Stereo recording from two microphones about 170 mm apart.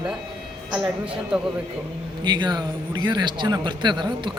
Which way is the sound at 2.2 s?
25° right (ahead or behind).